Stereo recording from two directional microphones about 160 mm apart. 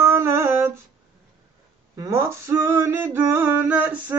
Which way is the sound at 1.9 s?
20° right (ahead or behind).